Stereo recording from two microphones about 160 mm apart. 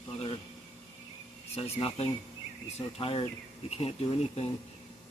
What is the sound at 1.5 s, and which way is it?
Speech, 40° left (ahead or behind).